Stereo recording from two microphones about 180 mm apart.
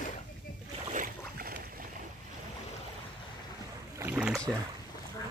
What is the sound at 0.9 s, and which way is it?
Boat, 50° right (ahead or behind).